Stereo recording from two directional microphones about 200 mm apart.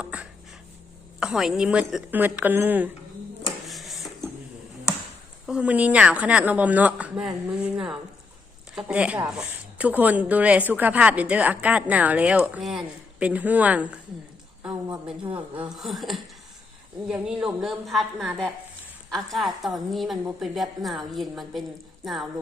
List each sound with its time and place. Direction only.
0.0 s a sound: 5° right (ahead or behind)
1.2 s a woman's voice: 5° right (ahead or behind)
3.7 s printer: centre (ahead or behind)
5.5 s a woman's voice: 5° right (ahead or behind)
15.7 s a woman's voice: centre (ahead or behind)